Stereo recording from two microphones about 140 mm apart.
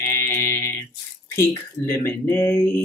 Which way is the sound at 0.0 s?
20° left (ahead or behind).